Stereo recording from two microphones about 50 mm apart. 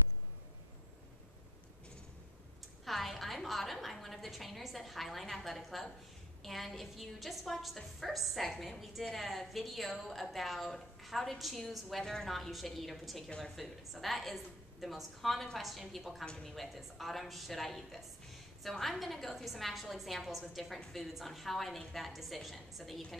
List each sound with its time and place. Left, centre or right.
2.8 s a woman's voice: centre